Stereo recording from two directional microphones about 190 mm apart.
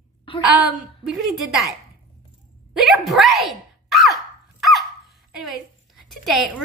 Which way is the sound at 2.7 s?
Centre (ahead or behind).